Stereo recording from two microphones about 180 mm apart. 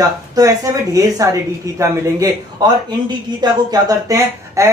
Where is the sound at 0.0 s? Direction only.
20° right (ahead or behind).